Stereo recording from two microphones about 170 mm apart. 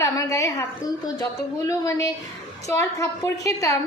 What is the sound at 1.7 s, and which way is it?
A woman's voice, 15° left (ahead or behind).